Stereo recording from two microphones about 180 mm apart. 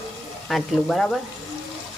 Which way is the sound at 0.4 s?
Centre (ahead or behind).